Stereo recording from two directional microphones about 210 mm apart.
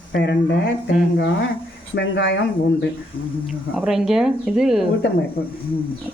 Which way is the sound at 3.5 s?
5° right (ahead or behind).